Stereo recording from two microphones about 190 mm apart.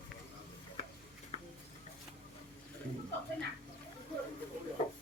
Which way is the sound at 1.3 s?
30° left (ahead or behind).